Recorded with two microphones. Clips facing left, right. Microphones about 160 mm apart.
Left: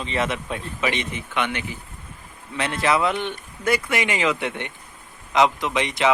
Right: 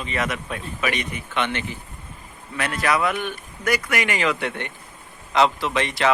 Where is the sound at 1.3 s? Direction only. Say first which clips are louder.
Right 1 dB; 10° left (ahead or behind).